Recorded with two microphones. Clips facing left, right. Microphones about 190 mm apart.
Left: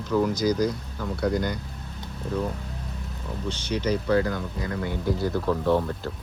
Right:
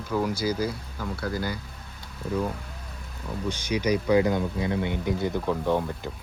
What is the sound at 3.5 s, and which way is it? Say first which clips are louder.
Speech: right 1 dB; 10° right (ahead or behind).